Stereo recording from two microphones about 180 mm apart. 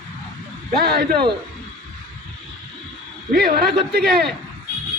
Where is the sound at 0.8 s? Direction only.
60° right (ahead or behind).